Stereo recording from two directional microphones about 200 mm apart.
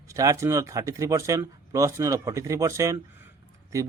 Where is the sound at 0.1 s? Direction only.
15° right (ahead or behind).